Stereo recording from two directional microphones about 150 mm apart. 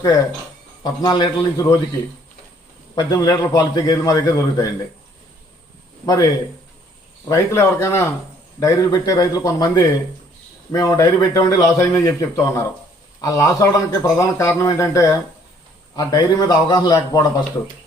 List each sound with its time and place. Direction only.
0.8 s a man's voice: 30° left (ahead or behind)
2.9 s a man's voice: 25° left (ahead or behind)
6.1 s a man's voice: 25° left (ahead or behind)